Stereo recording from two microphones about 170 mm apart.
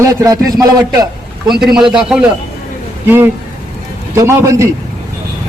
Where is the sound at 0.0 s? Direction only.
20° right (ahead or behind).